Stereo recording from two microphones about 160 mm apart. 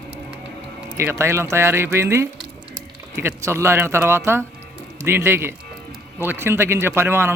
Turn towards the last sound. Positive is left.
turn(degrees=-15)  # may be behind; listen again after turning